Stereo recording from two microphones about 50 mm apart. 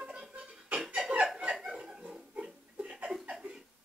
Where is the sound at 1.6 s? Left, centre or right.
Centre.